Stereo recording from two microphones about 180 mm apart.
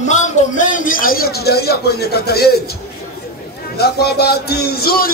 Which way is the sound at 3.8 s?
60° left (ahead or behind).